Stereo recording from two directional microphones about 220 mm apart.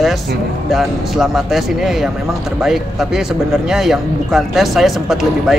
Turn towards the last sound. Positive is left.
turn(degrees=0)  # may be behind; listen again after turning